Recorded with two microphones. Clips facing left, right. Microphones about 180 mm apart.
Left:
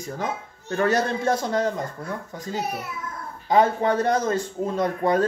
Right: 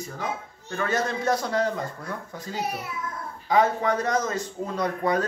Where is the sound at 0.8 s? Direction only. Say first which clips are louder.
Left 4 dB; 35° left (ahead or behind).